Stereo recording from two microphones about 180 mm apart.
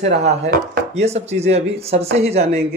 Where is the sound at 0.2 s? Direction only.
40° right (ahead or behind).